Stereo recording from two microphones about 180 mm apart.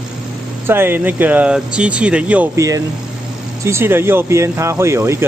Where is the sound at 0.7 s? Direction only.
10° right (ahead or behind).